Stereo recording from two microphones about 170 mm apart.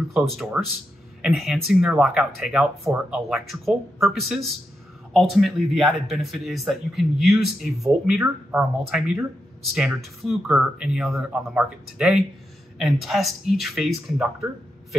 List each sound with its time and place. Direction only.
0.1 s speech: centre (ahead or behind)